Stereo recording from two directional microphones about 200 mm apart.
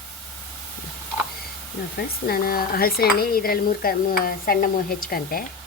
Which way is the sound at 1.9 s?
50° left (ahead or behind).